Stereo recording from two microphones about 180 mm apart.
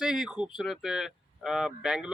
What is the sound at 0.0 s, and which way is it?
Speech, 5° right (ahead or behind).